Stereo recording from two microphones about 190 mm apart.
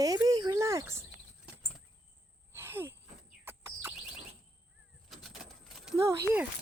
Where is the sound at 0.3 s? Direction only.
20° right (ahead or behind).